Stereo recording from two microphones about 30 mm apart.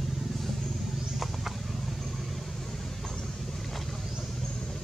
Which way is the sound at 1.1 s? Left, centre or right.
Centre.